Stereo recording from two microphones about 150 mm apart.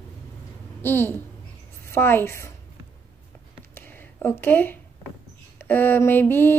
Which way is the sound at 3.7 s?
15° left (ahead or behind).